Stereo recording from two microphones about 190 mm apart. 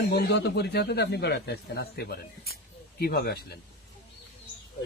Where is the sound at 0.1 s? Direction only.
60° left (ahead or behind).